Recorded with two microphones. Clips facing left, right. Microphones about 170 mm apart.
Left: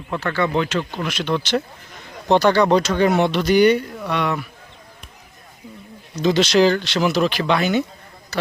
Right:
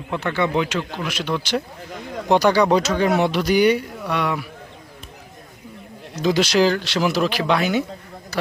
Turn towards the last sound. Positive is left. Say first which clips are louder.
# left 1 dB
turn(degrees=-5)  # may be behind; listen again after turning